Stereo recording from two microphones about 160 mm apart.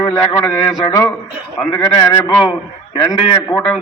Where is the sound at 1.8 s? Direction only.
25° left (ahead or behind).